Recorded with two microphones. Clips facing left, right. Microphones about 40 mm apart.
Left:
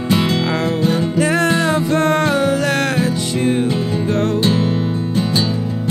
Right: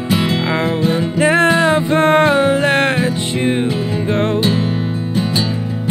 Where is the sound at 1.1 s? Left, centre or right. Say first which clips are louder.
Right 6 dB; right.